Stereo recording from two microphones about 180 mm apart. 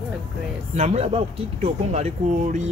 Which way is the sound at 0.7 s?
40° right (ahead or behind).